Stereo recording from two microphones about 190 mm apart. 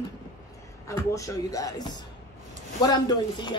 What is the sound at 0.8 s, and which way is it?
Speech, 15° left (ahead or behind).